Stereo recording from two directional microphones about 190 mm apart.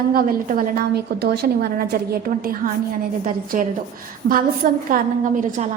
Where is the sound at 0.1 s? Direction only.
50° right (ahead or behind).